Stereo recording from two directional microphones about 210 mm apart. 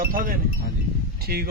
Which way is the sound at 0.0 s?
45° right (ahead or behind).